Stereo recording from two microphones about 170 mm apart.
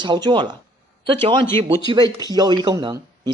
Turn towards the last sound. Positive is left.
turn(degrees=-25)  # may be behind; listen again after turning